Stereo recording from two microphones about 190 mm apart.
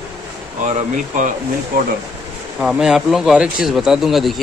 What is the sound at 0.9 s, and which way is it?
Speech, 40° right (ahead or behind).